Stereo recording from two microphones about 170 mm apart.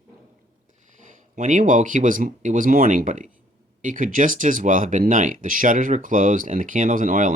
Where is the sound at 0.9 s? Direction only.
45° right (ahead or behind).